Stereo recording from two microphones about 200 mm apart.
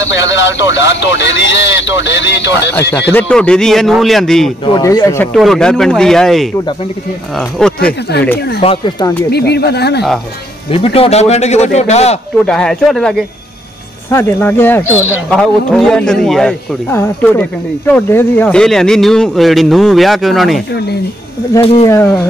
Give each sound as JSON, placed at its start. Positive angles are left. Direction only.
{"t": 0.0, "sound": "speech", "side_deg": 65}
{"t": 2.7, "sound": "speech", "side_deg": 10}
{"t": 4.6, "sound": "speech", "side_deg": 20}
{"t": 5.3, "sound": "speech", "side_deg": 0}
{"t": 8.5, "sound": "speech", "side_deg": 25}
{"t": 9.3, "sound": "speech", "side_deg": 55}
{"t": 10.7, "sound": "speech", "side_deg": 30}
{"t": 12.4, "sound": "speech", "side_deg": 5}
{"t": 21.8, "sound": "speech", "side_deg": 15}